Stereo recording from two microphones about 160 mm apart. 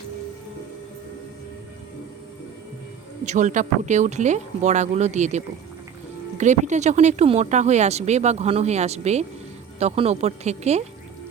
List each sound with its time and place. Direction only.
3.2 s speech: 50° right (ahead or behind)